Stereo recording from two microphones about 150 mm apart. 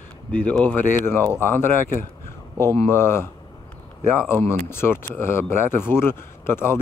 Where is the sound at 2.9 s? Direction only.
15° left (ahead or behind).